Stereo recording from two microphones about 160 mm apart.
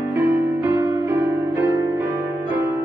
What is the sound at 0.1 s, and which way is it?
Music, 15° right (ahead or behind).